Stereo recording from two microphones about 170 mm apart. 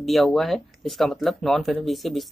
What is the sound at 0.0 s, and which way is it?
Speech, centre (ahead or behind).